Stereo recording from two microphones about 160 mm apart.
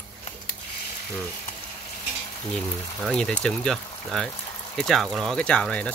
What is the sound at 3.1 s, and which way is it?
Speech, 5° left (ahead or behind).